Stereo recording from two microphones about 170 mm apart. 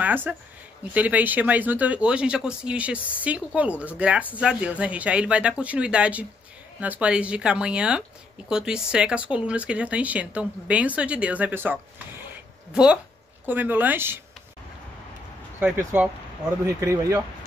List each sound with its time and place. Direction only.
0.0 s speech: 10° right (ahead or behind)
15.6 s speech: 15° right (ahead or behind)